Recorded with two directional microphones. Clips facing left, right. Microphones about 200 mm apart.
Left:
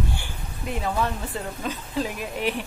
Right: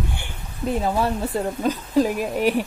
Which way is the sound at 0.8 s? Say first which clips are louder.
Right 3 dB; 35° right (ahead or behind).